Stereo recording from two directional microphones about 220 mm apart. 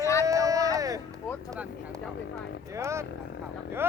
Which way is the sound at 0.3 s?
15° right (ahead or behind).